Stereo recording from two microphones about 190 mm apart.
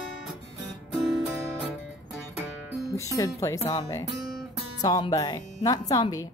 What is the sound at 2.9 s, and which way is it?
A woman's voice, 15° left (ahead or behind).